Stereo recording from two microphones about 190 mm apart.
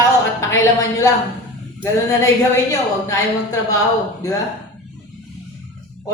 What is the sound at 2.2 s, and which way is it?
A woman's voice, 15° left (ahead or behind).